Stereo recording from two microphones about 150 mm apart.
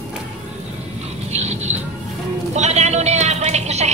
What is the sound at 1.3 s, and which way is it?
Music, 45° right (ahead or behind).